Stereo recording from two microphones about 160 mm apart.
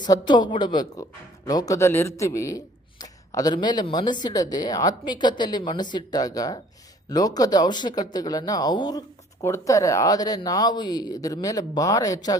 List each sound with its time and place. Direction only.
0.0 s speech: 25° left (ahead or behind)